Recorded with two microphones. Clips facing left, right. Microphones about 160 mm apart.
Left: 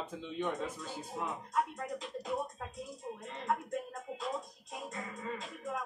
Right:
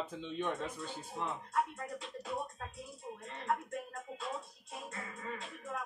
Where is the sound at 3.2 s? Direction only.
15° left (ahead or behind).